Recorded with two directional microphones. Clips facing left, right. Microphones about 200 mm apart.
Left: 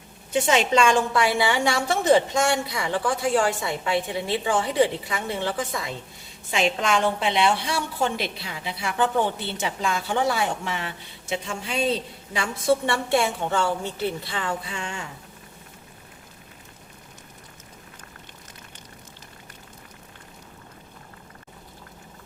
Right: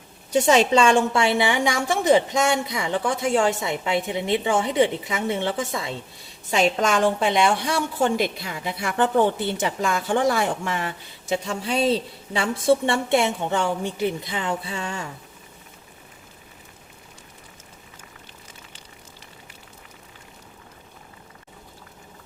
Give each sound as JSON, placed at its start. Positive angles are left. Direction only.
{"t": 0.3, "sound": "a woman's voice", "side_deg": -40}
{"t": 6.5, "sound": "a woman's voice", "side_deg": -40}